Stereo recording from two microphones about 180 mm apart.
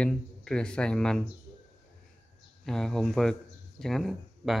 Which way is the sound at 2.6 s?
Centre (ahead or behind).